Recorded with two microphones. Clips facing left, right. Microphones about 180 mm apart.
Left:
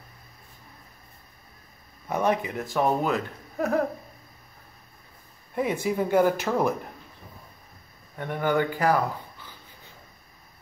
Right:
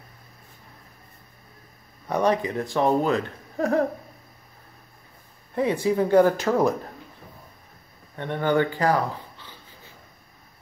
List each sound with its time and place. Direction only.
2.0 s speech: 10° left (ahead or behind)
5.5 s speech: 10° left (ahead or behind)
8.2 s speech: 10° left (ahead or behind)